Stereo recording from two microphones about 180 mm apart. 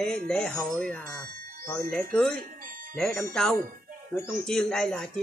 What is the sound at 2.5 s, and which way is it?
Music, 50° right (ahead or behind).